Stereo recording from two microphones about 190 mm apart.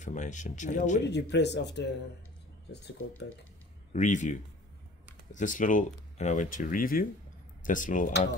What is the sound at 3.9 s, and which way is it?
Speech, 40° left (ahead or behind).